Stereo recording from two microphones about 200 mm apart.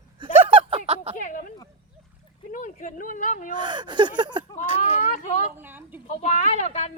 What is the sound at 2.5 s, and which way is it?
Speech, 40° left (ahead or behind).